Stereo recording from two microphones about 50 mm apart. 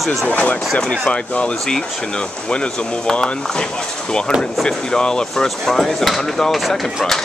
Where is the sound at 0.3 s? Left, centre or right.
Left.